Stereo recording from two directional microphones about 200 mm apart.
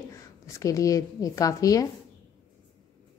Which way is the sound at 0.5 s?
15° left (ahead or behind).